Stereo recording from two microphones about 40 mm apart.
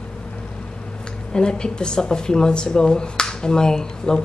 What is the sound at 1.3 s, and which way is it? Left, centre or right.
Speech, left.